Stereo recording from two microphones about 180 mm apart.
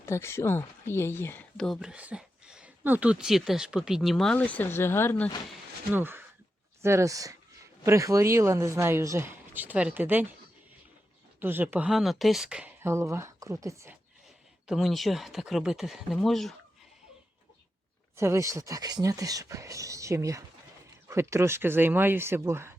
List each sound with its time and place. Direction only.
0.0 s speech: 15° left (ahead or behind)
5.9 s speech: 10° right (ahead or behind)
11.3 s speech: 10° right (ahead or behind)
14.7 s speech: centre (ahead or behind)
18.2 s speech: 15° right (ahead or behind)